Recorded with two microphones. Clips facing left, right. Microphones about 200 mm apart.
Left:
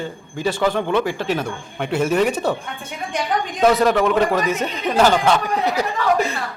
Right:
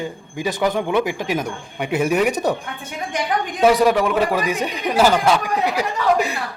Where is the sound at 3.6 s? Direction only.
10° right (ahead or behind).